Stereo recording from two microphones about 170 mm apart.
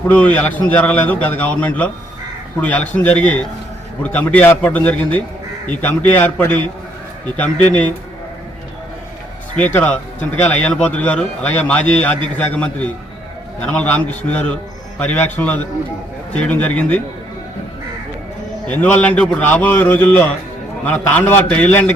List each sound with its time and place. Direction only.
0.1 s a man's voice: 10° left (ahead or behind)
9.6 s a man's voice: 10° left (ahead or behind)
18.7 s a man's voice: 10° left (ahead or behind)